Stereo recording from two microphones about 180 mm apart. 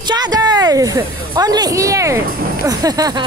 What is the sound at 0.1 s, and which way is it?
Speech, 20° right (ahead or behind).